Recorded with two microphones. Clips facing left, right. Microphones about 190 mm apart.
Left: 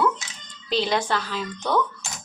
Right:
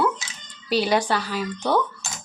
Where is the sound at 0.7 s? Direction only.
10° right (ahead or behind).